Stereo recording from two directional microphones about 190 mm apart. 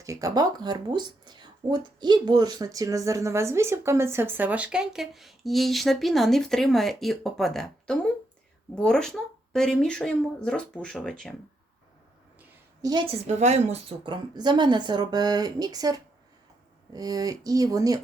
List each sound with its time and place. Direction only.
0.0 s speech: 15° right (ahead or behind); by 11.3 s 5° left (ahead or behind)
12.8 s a woman's voice: 25° right (ahead or behind)
13.2 s a woman's voice: 35° right (ahead or behind); by 18.0 s 20° right (ahead or behind)